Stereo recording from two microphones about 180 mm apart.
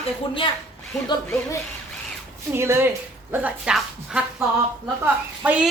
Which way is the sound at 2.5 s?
15° right (ahead or behind).